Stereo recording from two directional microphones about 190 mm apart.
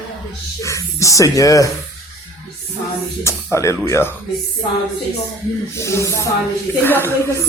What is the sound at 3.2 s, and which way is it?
Speech, 15° left (ahead or behind).